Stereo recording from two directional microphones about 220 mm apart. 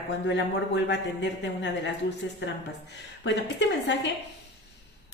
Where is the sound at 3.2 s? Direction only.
55° left (ahead or behind).